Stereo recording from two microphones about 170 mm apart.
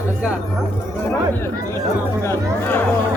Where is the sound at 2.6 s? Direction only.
10° left (ahead or behind).